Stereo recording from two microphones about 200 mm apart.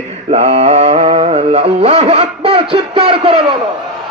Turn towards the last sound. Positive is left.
turn(degrees=-30)  # may be behind; listen again after turning